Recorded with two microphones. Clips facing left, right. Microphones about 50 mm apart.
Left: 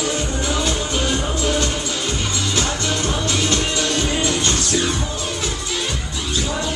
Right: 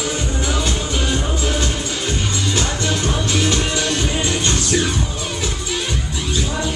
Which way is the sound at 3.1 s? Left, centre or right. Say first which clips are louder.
Right 1 dB; centre.